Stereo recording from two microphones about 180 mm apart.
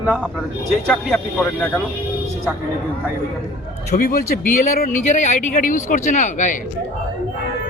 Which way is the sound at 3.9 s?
55° left (ahead or behind).